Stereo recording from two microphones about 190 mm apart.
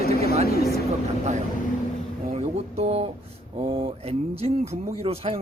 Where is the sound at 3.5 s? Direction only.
30° right (ahead or behind).